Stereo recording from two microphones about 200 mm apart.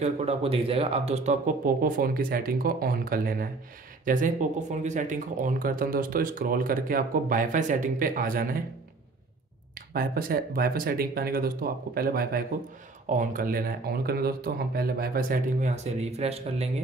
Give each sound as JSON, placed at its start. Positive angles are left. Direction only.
{"t": 0.0, "sound": "speech", "side_deg": -30}
{"t": 9.9, "sound": "speech", "side_deg": -50}